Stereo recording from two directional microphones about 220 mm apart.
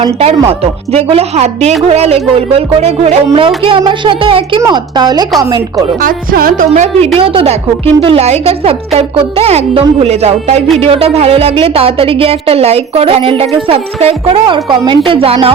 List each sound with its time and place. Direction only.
0.0 s speech: 25° right (ahead or behind)
6.0 s speech: 40° right (ahead or behind)